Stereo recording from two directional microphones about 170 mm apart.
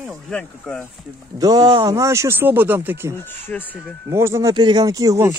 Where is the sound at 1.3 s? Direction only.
20° right (ahead or behind).